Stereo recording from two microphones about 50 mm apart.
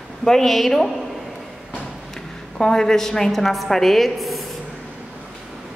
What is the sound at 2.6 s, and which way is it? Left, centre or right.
A woman's voice, centre.